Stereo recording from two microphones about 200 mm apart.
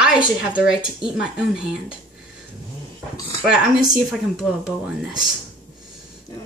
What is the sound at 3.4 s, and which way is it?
Speech, centre (ahead or behind).